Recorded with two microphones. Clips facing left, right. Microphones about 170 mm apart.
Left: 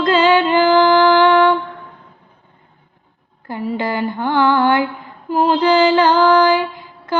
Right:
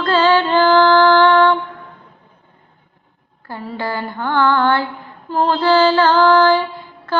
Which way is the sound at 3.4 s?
15° left (ahead or behind).